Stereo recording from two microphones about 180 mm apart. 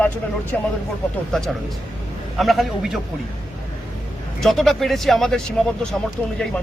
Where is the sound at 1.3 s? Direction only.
Centre (ahead or behind).